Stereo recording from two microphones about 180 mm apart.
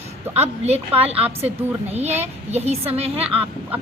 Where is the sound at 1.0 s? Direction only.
35° right (ahead or behind).